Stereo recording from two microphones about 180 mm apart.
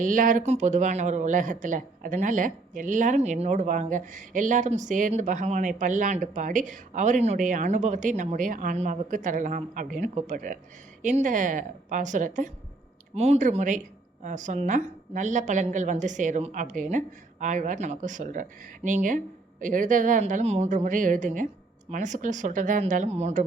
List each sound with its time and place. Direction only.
0.0 s speech: 45° right (ahead or behind)